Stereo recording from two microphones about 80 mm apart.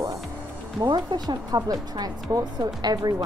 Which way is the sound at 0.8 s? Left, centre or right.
Right.